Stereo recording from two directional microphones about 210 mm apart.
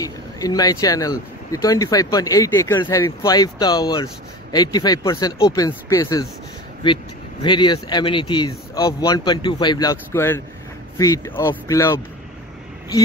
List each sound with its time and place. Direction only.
0.0 s speech: 15° left (ahead or behind)